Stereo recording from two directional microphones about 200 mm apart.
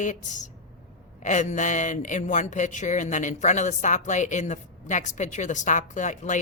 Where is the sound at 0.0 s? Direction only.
40° left (ahead or behind).